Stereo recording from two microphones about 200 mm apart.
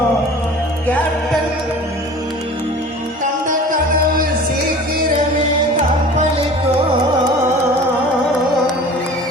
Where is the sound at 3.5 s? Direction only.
40° right (ahead or behind).